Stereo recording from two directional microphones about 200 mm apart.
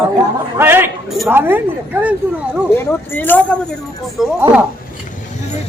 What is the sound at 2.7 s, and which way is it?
Speech, 10° left (ahead or behind).